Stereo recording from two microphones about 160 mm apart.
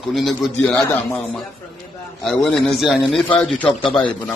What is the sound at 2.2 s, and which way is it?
A man's voice, 5° left (ahead or behind).